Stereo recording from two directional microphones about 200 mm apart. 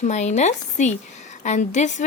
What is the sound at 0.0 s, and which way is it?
A woman's voice, 35° left (ahead or behind).